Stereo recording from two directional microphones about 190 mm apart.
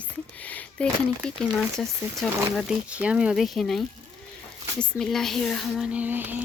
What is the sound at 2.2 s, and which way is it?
Speech, centre (ahead or behind).